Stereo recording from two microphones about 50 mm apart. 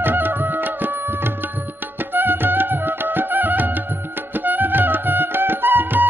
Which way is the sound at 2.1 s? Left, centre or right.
Right.